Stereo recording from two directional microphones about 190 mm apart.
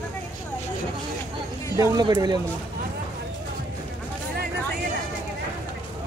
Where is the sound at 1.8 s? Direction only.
20° right (ahead or behind).